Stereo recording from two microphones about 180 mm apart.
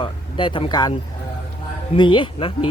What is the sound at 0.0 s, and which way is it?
Speech, 30° left (ahead or behind).